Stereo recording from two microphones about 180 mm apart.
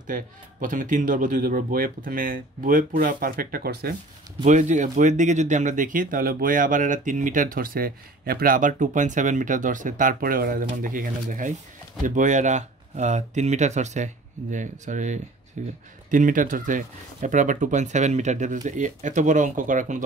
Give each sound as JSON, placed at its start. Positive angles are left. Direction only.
{"t": 0.0, "sound": "speech", "side_deg": -45}
{"t": 4.5, "sound": "speech", "side_deg": -40}